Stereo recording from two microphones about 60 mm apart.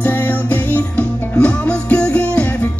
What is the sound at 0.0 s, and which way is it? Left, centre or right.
Music, left.